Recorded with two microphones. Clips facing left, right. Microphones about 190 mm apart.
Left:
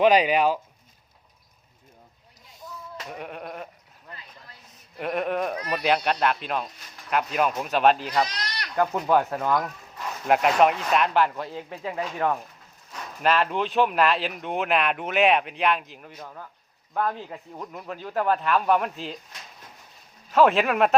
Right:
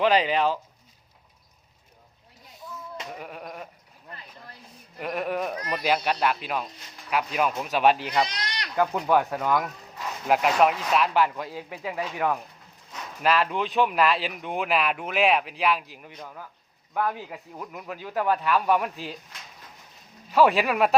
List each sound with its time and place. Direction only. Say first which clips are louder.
0.0 s speech: left 3 dB; 15° left (ahead or behind)
3.1 s speech: left 2 dB; centre (ahead or behind)
4.9 s speech: left 2 dB; centre (ahead or behind)
8.0 s speech: even; 20° right (ahead or behind)
8.7 s speech: left 1 dB; centre (ahead or behind)
16.1 s speech: even; centre (ahead or behind)
16.9 s speech: left 1 dB; 10° right (ahead or behind)
20.3 s speech: left 1 dB; centre (ahead or behind)